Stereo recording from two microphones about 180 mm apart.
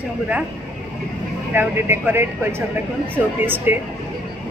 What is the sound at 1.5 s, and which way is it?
Speech, 10° right (ahead or behind).